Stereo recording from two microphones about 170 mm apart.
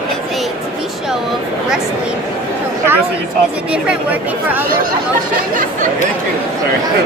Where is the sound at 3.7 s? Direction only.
10° right (ahead or behind).